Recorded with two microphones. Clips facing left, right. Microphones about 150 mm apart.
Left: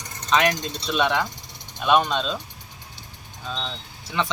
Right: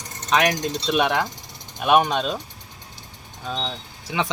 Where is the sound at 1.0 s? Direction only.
45° right (ahead or behind).